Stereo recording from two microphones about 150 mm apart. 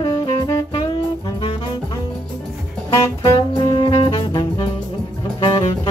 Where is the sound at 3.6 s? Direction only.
35° left (ahead or behind).